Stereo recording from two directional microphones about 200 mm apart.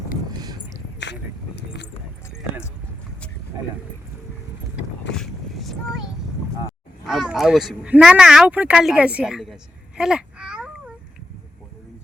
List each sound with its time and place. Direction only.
1.5 s keys jangling: 55° left (ahead or behind)
4.8 s vehicle: centre (ahead or behind)
7.1 s speech: centre (ahead or behind)
10.0 s babbling: 5° right (ahead or behind)